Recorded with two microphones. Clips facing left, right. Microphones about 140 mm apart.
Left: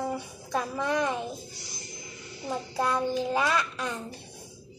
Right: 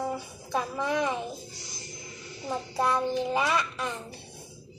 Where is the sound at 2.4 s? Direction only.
5° right (ahead or behind).